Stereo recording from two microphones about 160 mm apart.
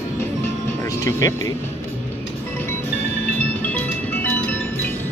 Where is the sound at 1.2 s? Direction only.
25° left (ahead or behind).